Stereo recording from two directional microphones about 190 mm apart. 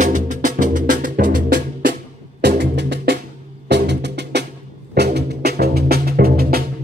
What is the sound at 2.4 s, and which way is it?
Music, 65° right (ahead or behind).